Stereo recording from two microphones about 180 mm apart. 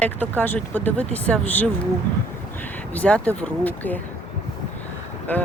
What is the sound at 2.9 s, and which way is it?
Speech, 10° left (ahead or behind).